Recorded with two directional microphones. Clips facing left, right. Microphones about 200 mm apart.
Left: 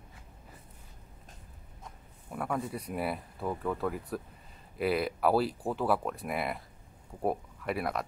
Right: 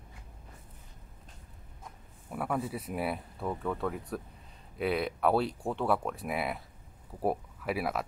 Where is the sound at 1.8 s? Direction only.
5° right (ahead or behind).